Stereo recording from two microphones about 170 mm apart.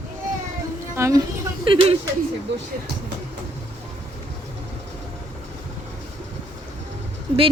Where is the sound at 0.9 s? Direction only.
15° right (ahead or behind).